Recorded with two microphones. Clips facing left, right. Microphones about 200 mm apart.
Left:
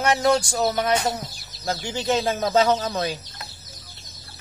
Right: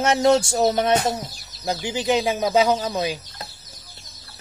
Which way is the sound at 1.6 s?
15° right (ahead or behind).